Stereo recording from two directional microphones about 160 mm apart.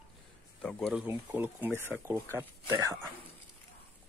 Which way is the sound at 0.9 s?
10° right (ahead or behind).